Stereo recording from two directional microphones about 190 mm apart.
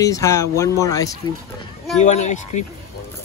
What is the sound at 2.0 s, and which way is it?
Speech, 40° left (ahead or behind).